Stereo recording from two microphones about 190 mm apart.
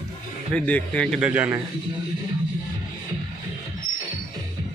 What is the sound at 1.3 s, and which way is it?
Speech, 5° right (ahead or behind).